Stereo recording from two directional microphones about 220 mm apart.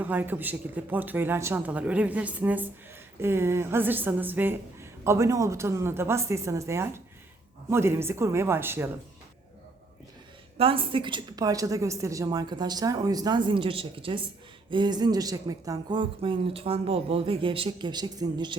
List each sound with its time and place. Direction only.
0.0 s speech: 10° right (ahead or behind)
10.6 s speech: 25° right (ahead or behind)